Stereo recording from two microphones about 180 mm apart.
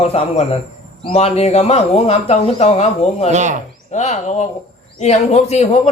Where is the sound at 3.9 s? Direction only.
40° left (ahead or behind).